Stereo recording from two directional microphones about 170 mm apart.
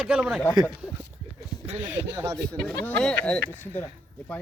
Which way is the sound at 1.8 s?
15° right (ahead or behind).